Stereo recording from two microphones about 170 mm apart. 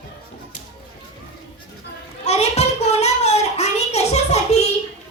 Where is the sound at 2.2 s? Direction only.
40° left (ahead or behind).